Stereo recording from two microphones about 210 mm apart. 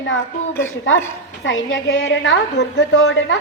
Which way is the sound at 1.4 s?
65° left (ahead or behind).